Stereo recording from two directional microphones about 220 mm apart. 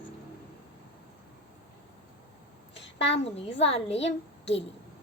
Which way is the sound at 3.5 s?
25° left (ahead or behind).